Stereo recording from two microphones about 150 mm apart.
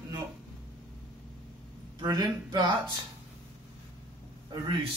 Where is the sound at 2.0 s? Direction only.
25° right (ahead or behind).